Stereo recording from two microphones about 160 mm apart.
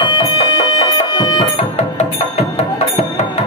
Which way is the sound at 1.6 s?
40° left (ahead or behind).